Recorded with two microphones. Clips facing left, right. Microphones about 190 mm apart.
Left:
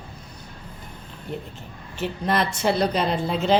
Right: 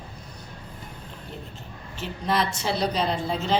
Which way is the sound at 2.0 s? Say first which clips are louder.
Left 2 dB; 55° left (ahead or behind).